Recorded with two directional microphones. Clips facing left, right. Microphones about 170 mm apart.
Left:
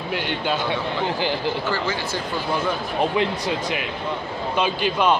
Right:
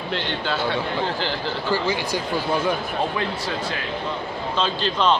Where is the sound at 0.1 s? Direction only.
10° left (ahead or behind).